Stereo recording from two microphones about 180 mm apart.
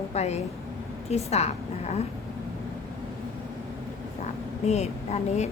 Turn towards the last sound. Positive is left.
turn(degrees=35)  # may be behind; listen again after turning